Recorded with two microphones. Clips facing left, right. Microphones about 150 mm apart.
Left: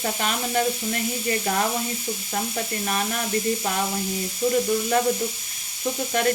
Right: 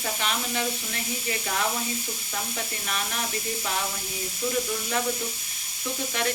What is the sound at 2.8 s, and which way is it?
Speech, 40° left (ahead or behind).